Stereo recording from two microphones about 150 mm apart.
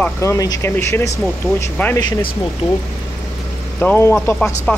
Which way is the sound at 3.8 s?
15° left (ahead or behind).